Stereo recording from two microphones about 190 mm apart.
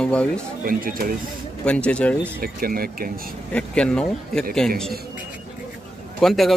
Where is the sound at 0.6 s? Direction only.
50° right (ahead or behind).